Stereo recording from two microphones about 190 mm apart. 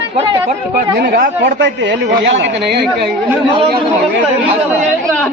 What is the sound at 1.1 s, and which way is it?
A man's voice, 60° right (ahead or behind).